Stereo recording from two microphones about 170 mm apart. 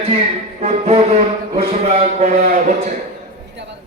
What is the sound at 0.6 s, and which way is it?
Music, 35° right (ahead or behind).